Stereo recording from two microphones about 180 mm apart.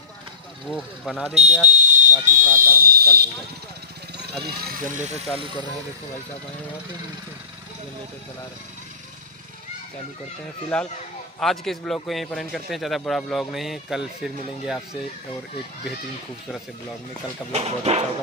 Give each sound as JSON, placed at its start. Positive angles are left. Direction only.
{"t": 0.7, "sound": "a man's voice", "side_deg": -5}
{"t": 1.3, "sound": "speech", "side_deg": -40}
{"t": 4.5, "sound": "speech", "side_deg": -55}
{"t": 11.3, "sound": "a man's voice", "side_deg": 0}
{"t": 17.5, "sound": "speech", "side_deg": -35}